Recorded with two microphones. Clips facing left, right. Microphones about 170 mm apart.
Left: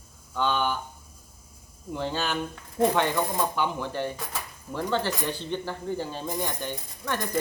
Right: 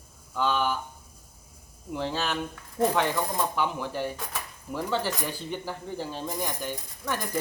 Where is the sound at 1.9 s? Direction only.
Centre (ahead or behind).